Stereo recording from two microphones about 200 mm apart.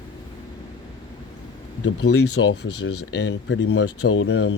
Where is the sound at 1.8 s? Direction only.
90° left.